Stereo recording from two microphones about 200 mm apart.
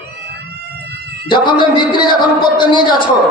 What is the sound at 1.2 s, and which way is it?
A woman's voice, 25° left (ahead or behind).